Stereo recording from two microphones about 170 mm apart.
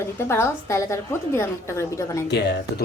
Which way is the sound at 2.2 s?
80° left.